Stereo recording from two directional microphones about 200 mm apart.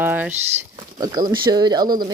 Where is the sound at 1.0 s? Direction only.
20° right (ahead or behind).